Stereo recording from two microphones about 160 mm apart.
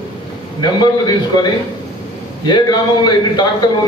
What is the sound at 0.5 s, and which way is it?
A man's voice, 25° left (ahead or behind).